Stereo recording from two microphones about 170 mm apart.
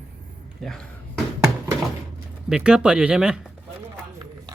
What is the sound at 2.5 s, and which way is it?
Speech, 5° right (ahead or behind).